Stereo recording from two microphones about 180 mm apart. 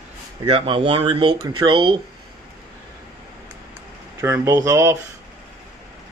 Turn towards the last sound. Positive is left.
turn(degrees=-15)  # may be behind; listen again after turning